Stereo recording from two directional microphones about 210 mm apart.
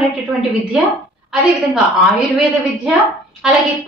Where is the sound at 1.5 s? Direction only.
Centre (ahead or behind).